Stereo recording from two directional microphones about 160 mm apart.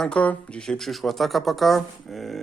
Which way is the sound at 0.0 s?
5° left (ahead or behind).